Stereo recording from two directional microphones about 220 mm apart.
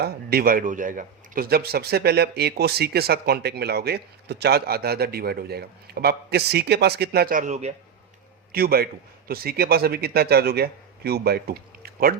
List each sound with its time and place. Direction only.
0.0 s speech: 45° right (ahead or behind)
8.5 s speech: 45° right (ahead or behind)